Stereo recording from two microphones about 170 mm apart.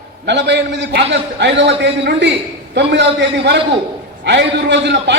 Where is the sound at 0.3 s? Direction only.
90° right.